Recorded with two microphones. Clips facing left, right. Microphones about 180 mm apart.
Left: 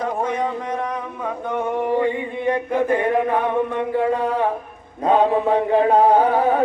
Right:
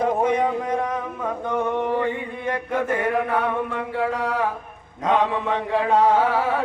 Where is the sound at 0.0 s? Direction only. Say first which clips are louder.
Right 2 dB; 10° right (ahead or behind).